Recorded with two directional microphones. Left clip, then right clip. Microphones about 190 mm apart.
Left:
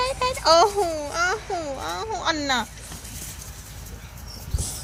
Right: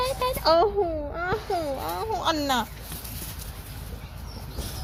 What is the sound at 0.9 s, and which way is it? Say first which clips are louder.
Speech: left 4 dB; centre (ahead or behind).